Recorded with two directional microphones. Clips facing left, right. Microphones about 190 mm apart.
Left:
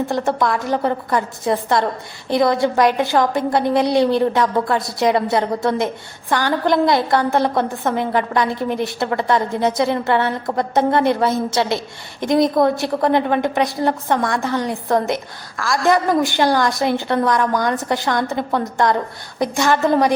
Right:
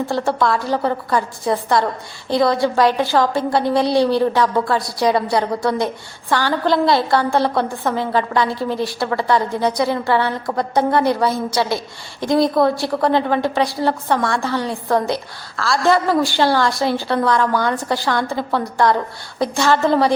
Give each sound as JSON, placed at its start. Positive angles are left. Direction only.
{"t": 0.1, "sound": "a woman's voice", "side_deg": 20}